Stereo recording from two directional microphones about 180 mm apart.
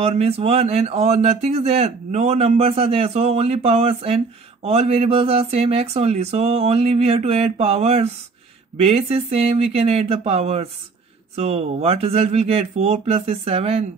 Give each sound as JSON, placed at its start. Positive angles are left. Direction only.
{"t": 0.0, "sound": "speech", "side_deg": -35}